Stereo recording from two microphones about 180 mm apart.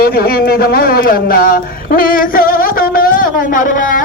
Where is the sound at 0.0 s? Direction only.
55° left (ahead or behind).